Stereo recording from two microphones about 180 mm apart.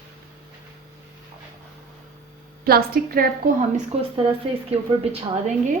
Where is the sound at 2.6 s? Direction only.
55° right (ahead or behind).